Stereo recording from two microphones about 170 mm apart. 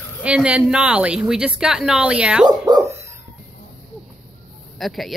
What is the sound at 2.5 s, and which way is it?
Dog, 25° right (ahead or behind).